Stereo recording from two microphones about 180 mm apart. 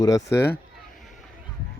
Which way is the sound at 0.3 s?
65° left (ahead or behind).